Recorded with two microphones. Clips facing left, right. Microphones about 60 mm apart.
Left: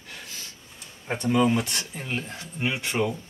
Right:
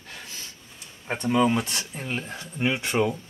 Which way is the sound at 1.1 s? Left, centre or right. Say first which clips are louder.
Even; centre.